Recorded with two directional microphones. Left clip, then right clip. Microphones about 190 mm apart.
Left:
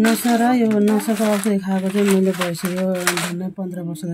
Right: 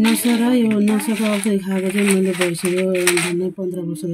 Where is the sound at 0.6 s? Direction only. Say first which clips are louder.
Left 1 dB; 5° right (ahead or behind).